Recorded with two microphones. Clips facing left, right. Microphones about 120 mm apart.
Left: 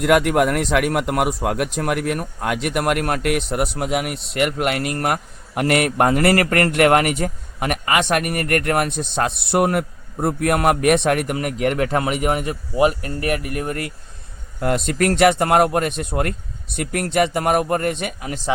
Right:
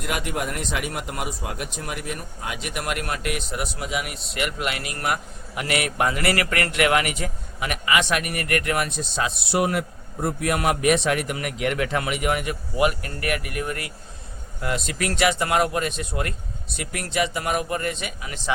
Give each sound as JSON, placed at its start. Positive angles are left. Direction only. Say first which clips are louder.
{"t": 0.0, "sound": "a man's voice", "louder": "left 12 dB", "side_deg": 70}